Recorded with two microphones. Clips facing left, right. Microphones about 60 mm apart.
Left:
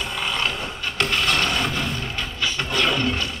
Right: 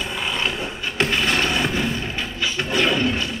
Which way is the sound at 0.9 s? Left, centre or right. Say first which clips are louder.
Right 1 dB; centre.